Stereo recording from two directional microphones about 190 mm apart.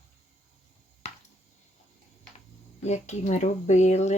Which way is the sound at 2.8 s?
35° left (ahead or behind).